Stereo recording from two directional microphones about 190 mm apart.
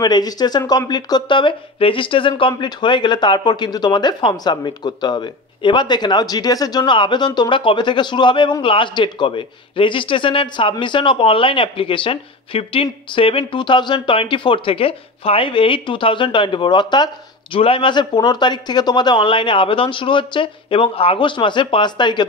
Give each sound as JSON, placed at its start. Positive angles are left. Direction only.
{"t": 0.0, "sound": "speech", "side_deg": 20}